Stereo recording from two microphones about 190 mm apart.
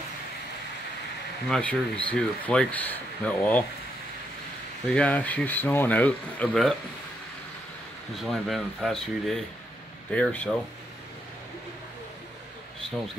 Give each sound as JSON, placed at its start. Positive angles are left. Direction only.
{"t": 1.5, "sound": "speech", "side_deg": 5}
{"t": 4.9, "sound": "speech", "side_deg": 5}
{"t": 8.2, "sound": "speech", "side_deg": 0}